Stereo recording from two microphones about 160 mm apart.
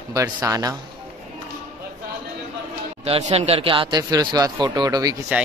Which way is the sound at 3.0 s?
40° right (ahead or behind).